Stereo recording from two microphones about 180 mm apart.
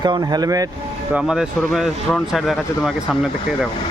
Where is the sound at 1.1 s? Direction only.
5° right (ahead or behind).